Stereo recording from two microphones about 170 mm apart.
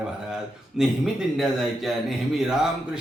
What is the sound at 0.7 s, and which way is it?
Speech, centre (ahead or behind).